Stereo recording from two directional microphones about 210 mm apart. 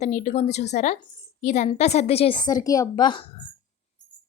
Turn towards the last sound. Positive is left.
turn(degrees=20)  # may be behind; listen again after turning